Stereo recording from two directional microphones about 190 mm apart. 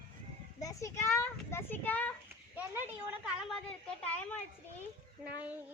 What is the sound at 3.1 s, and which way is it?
Speech, 5° right (ahead or behind).